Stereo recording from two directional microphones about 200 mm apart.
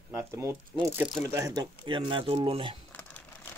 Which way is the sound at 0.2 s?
15° right (ahead or behind).